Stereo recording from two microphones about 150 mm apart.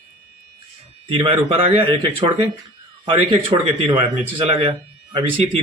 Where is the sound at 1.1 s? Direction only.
40° right (ahead or behind).